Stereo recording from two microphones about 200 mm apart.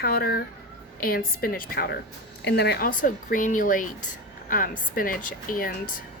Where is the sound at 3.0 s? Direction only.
40° left (ahead or behind).